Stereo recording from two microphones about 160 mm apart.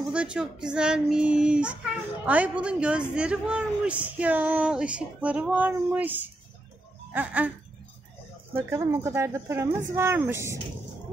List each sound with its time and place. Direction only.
0.1 s a man's voice: 5° right (ahead or behind)
8.5 s a man's voice: 15° right (ahead or behind)